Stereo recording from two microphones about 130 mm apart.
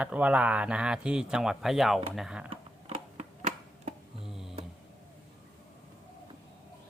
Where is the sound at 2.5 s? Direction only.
50° right (ahead or behind).